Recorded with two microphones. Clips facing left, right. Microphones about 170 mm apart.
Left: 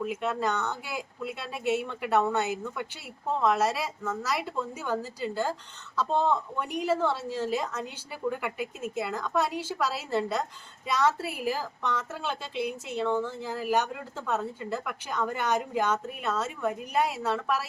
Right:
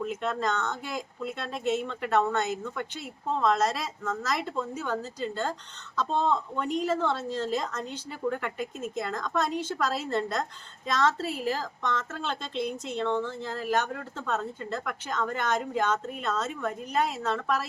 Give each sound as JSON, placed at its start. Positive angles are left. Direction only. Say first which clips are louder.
{"t": 0.0, "sound": "a woman's voice", "louder": "even", "side_deg": 5}